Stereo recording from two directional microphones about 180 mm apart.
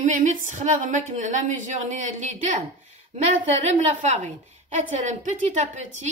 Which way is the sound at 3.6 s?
40° right (ahead or behind).